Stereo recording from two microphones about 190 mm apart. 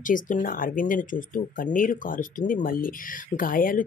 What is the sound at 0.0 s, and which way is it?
Speech, 45° left (ahead or behind).